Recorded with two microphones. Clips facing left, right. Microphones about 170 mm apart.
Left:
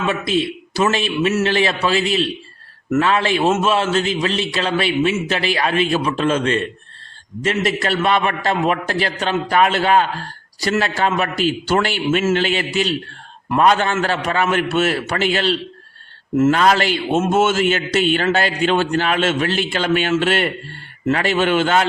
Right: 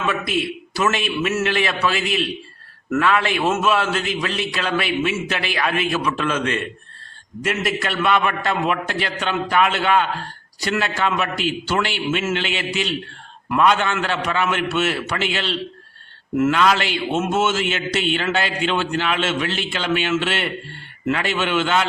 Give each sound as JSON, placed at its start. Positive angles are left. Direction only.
{"t": 0.1, "sound": "a man's voice", "side_deg": 25}